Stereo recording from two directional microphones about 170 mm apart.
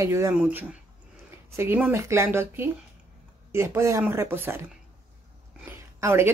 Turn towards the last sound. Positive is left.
turn(degrees=-15)  # may be behind; listen again after turning